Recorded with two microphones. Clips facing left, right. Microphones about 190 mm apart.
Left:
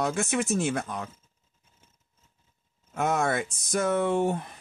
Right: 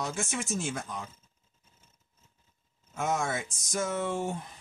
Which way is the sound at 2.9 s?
60° left (ahead or behind).